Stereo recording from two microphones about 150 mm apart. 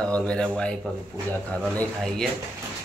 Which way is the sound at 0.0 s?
5° left (ahead or behind).